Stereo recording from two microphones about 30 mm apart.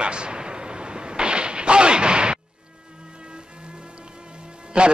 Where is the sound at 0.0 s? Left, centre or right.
Right.